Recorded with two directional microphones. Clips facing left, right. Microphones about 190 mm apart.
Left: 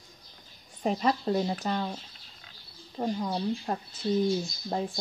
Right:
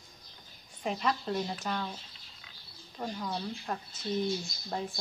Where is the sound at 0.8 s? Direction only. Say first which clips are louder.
Left 5 dB; 40° left (ahead or behind).